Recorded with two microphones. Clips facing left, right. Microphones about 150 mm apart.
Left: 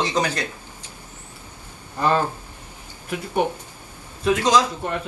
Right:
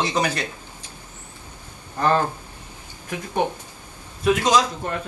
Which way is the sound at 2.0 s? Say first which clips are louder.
Even; 10° left (ahead or behind).